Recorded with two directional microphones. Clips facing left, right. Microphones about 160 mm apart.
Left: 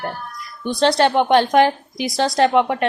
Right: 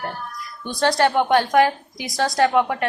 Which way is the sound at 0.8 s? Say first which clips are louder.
Left 2 dB; 20° left (ahead or behind).